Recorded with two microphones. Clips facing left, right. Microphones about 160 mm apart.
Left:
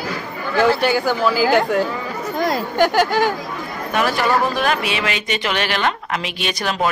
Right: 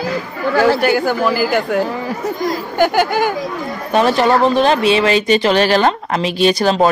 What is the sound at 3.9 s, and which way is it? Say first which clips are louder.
Speech: right 6 dB; 30° right (ahead or behind).